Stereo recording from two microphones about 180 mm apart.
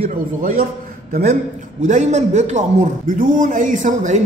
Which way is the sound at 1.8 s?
40° right (ahead or behind).